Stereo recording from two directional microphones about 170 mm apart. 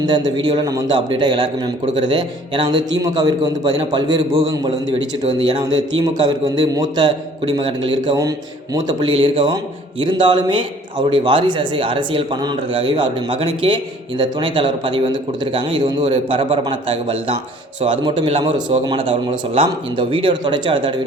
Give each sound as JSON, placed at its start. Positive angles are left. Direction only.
{"t": 0.0, "sound": "a man's voice", "side_deg": -25}